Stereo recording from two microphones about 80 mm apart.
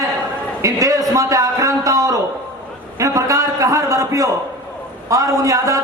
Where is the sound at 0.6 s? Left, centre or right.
Right.